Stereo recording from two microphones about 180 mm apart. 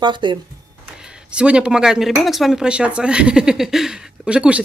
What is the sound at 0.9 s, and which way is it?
A woman's voice, 5° right (ahead or behind).